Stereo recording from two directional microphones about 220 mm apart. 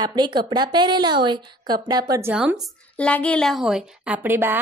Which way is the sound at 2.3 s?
5° right (ahead or behind).